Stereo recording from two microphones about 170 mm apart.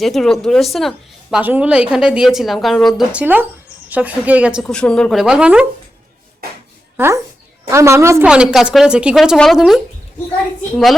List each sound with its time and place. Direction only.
0.0 s a woman's voice: centre (ahead or behind)
4.6 s a woman's voice: 5° left (ahead or behind)
6.9 s a woman's voice: 15° right (ahead or behind)
8.3 s a woman's voice: 5° right (ahead or behind)